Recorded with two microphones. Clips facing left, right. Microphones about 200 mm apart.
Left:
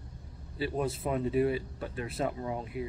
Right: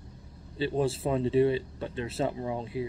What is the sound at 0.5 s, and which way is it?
Speech, 25° right (ahead or behind).